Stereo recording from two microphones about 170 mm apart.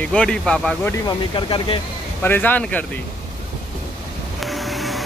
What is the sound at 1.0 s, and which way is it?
Speech, 30° left (ahead or behind).